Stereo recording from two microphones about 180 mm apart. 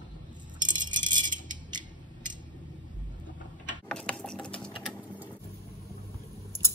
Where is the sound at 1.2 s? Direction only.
45° right (ahead or behind).